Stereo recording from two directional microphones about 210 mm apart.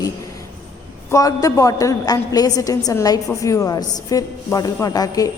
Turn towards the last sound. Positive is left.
turn(degrees=15)  # may be behind; listen again after turning